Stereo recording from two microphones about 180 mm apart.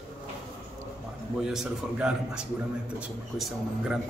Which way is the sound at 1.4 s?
5° right (ahead or behind).